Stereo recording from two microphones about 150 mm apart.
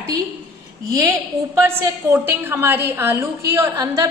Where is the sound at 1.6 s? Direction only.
15° right (ahead or behind).